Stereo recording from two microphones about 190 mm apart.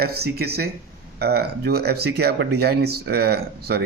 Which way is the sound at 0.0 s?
55° right (ahead or behind).